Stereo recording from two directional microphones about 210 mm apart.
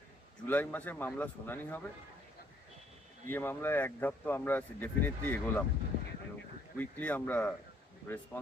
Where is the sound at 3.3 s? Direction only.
10° left (ahead or behind).